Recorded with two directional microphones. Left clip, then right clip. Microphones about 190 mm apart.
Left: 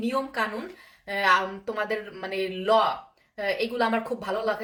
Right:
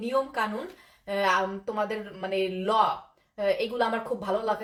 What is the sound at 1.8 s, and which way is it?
A woman's voice, 15° left (ahead or behind).